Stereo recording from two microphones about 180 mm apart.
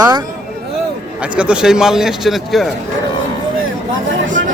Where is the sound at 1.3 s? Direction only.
5° right (ahead or behind).